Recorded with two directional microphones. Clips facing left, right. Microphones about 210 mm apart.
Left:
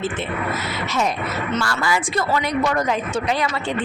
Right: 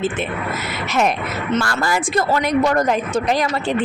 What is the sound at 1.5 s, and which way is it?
Speech, 45° right (ahead or behind).